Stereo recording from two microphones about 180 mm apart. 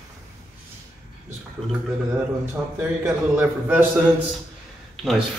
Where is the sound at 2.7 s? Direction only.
10° right (ahead or behind).